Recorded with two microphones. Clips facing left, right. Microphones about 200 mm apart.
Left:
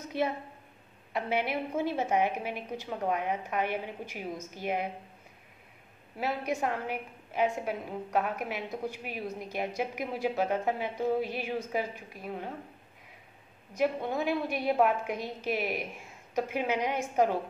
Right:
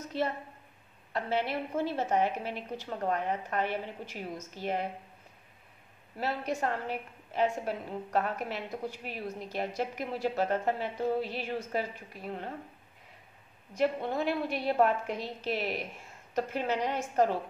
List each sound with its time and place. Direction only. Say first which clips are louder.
0.1 s a woman's voice: left 1 dB; 55° left (ahead or behind)
1.1 s a woman's voice: left 1 dB; 15° left (ahead or behind)
6.1 s a woman's voice: left 1 dB; 10° left (ahead or behind)
13.7 s a woman's voice: even; 10° left (ahead or behind)